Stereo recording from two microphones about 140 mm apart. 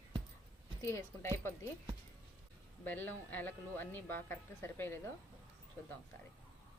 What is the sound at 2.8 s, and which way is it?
A woman's voice, 15° left (ahead or behind).